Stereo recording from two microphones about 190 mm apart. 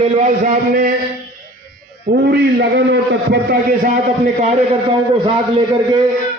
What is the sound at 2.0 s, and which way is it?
A man's voice, 60° right (ahead or behind).